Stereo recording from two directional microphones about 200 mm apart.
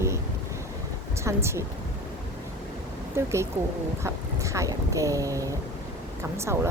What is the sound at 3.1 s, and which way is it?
Speech, 15° right (ahead or behind).